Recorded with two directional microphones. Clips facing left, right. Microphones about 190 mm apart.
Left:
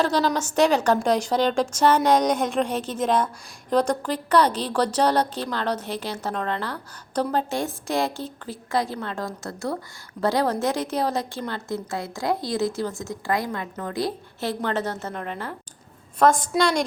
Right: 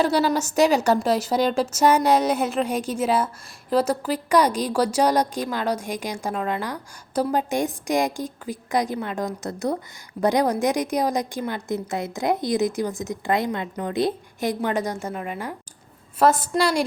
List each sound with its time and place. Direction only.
0.0 s a woman's voice: 10° right (ahead or behind)